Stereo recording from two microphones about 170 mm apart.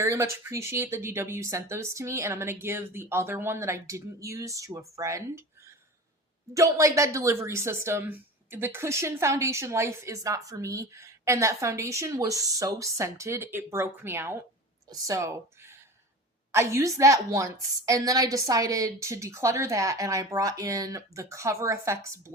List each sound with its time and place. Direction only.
0.0 s a woman's voice: 15° right (ahead or behind)
6.5 s a woman's voice: 20° right (ahead or behind)